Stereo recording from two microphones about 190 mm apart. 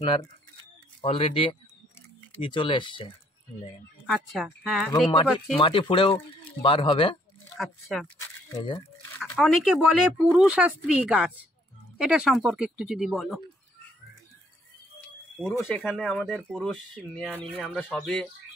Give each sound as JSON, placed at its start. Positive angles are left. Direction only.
{"t": 0.0, "sound": "speech", "side_deg": 25}
{"t": 4.0, "sound": "speech", "side_deg": 0}
{"t": 5.6, "sound": "speech", "side_deg": 30}
{"t": 7.5, "sound": "speech", "side_deg": 0}
{"t": 8.2, "sound": "speech", "side_deg": 20}
{"t": 9.3, "sound": "speech", "side_deg": 0}
{"t": 15.3, "sound": "speech", "side_deg": 5}